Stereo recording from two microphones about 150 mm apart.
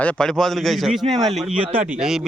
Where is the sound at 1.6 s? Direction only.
40° right (ahead or behind).